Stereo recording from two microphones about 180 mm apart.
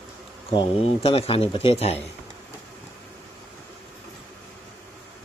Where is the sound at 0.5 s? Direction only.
30° left (ahead or behind).